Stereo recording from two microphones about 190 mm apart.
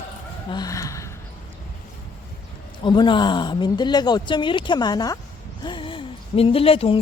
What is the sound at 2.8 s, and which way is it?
Speech, 25° left (ahead or behind).